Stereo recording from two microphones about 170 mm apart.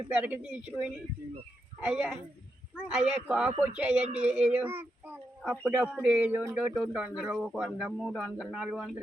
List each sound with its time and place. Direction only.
0.2 s speech: 10° right (ahead or behind)